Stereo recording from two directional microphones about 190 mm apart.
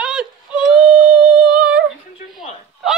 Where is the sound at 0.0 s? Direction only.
5° right (ahead or behind).